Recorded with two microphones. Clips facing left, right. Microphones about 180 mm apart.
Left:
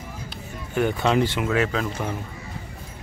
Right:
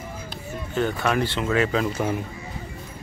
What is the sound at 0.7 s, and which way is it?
Speech, 15° left (ahead or behind).